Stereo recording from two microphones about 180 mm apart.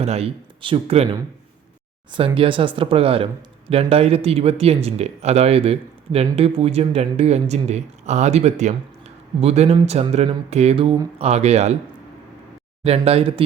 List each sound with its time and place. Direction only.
0.0 s speech: 35° right (ahead or behind)
2.1 s speech: 30° right (ahead or behind)
12.8 s speech: 35° right (ahead or behind)